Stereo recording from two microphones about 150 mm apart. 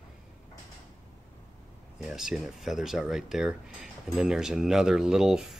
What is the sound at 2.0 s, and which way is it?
Speech, 5° right (ahead or behind).